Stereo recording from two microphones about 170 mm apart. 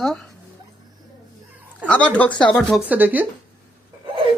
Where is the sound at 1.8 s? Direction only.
5° left (ahead or behind).